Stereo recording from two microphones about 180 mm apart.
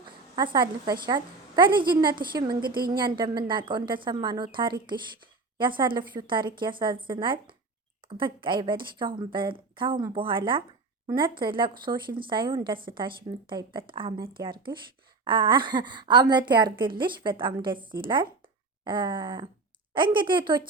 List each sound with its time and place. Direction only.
0.0 s a woman's voice: 25° right (ahead or behind)